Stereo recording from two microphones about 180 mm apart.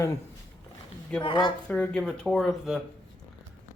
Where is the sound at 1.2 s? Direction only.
25° left (ahead or behind).